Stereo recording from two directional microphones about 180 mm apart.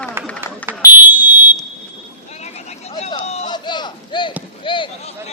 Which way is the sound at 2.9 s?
30° left (ahead or behind).